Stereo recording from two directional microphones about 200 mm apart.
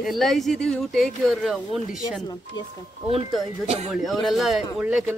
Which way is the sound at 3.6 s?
30° right (ahead or behind).